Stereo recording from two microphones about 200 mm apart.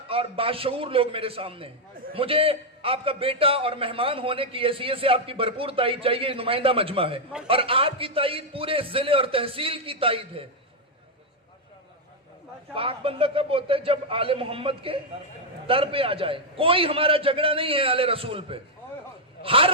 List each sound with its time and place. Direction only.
0.1 s a man's voice: 30° right (ahead or behind)
12.7 s a man's voice: 25° right (ahead or behind)